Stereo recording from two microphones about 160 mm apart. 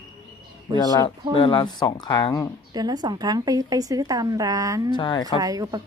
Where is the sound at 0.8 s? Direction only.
25° left (ahead or behind).